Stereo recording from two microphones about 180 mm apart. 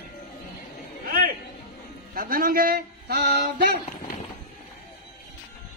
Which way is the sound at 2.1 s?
50° right (ahead or behind).